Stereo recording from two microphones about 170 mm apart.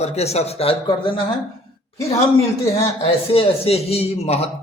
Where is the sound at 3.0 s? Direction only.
35° left (ahead or behind).